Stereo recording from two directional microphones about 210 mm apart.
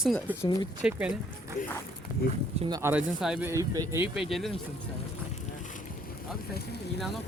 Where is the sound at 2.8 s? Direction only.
10° right (ahead or behind).